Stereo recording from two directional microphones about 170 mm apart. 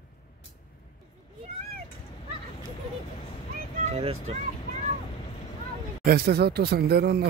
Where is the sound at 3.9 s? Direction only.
35° right (ahead or behind).